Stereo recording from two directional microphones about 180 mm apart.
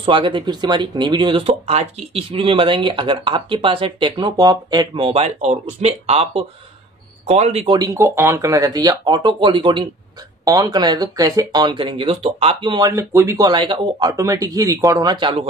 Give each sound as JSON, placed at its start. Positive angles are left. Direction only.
{"t": 0.0, "sound": "speech", "side_deg": -30}
{"t": 7.2, "sound": "speech", "side_deg": -35}